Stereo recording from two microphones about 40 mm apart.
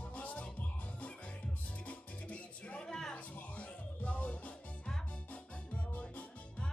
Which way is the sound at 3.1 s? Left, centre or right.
Left.